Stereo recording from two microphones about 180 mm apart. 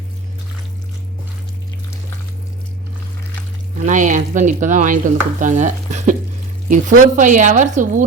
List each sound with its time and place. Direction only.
3.8 s speech: 45° right (ahead or behind)